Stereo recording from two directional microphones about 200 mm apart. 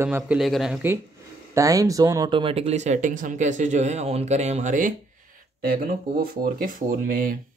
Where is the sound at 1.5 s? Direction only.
15° right (ahead or behind).